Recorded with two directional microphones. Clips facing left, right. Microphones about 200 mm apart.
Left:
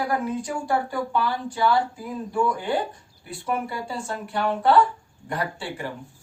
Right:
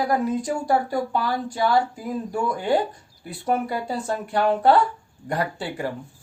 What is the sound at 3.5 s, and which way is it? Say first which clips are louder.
Speech: right 4 dB; 40° right (ahead or behind).